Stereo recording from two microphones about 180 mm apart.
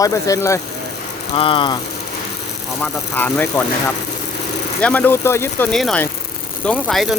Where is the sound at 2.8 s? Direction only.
10° left (ahead or behind).